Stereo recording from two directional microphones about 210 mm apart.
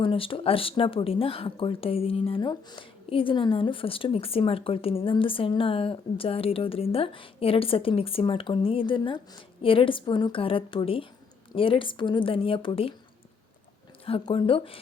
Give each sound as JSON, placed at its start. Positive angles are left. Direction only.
{"t": 0.0, "sound": "speech", "side_deg": 25}
{"t": 14.0, "sound": "speech", "side_deg": 25}